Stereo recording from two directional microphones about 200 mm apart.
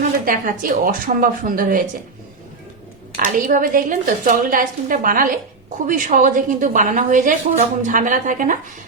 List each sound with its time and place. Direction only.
0.3 s a woman's voice: 45° right (ahead or behind)
3.2 s a woman's voice: 45° right (ahead or behind)